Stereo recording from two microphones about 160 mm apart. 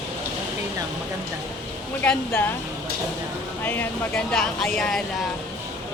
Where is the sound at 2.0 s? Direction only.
10° left (ahead or behind).